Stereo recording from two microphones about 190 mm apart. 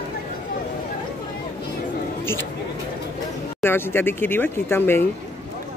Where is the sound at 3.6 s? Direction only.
10° left (ahead or behind).